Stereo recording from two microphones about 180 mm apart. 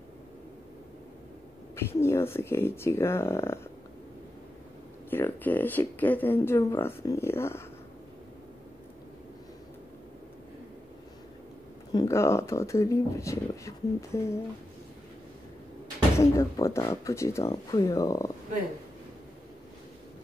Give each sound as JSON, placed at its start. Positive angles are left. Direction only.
{"t": 1.8, "sound": "speech", "side_deg": 15}
{"t": 5.1, "sound": "speech", "side_deg": 10}
{"t": 11.9, "sound": "speech", "side_deg": 20}
{"t": 16.2, "sound": "speech", "side_deg": 15}